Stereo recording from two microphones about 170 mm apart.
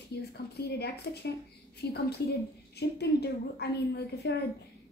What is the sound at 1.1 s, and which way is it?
A woman's voice, 60° left (ahead or behind).